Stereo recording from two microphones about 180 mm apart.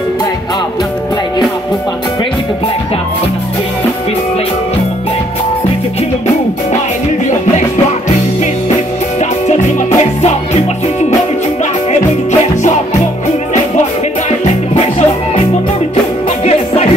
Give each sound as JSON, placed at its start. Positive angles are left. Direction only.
{"t": 9.2, "sound": "music", "side_deg": 40}
{"t": 14.4, "sound": "music", "side_deg": 35}
{"t": 16.4, "sound": "music", "side_deg": 35}